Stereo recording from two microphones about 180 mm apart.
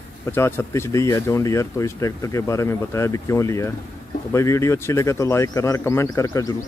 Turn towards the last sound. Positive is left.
turn(degrees=20)  # may be behind; listen again after turning